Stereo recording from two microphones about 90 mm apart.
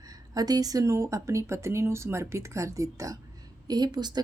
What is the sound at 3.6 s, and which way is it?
Speech, 50° right (ahead or behind).